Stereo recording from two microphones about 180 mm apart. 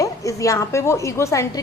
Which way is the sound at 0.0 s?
15° left (ahead or behind).